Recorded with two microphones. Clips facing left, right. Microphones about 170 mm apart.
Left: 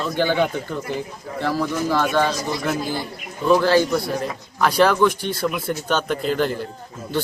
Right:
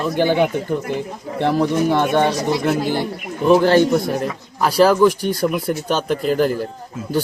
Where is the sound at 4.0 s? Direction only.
45° right (ahead or behind).